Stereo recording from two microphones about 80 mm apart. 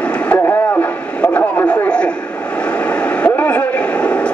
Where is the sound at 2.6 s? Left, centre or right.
Centre.